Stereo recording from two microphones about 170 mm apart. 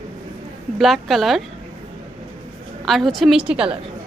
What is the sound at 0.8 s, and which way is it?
Speech, centre (ahead or behind).